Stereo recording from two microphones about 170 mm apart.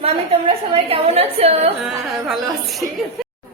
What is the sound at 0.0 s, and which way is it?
A woman's voice, 35° right (ahead or behind).